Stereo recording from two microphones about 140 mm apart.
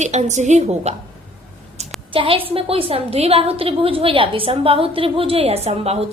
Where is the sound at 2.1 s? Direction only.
40° right (ahead or behind).